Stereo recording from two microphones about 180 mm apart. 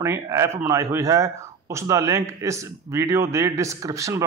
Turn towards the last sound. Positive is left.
turn(degrees=-15)  # may be behind; listen again after turning